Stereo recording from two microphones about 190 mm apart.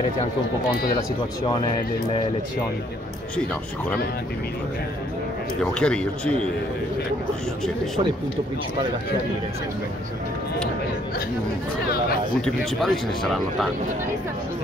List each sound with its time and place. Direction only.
5.6 s speech: 5° left (ahead or behind)
7.6 s speech: centre (ahead or behind)
12.4 s speech: 5° left (ahead or behind)